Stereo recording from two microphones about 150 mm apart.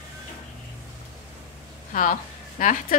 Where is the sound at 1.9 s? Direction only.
60° left (ahead or behind).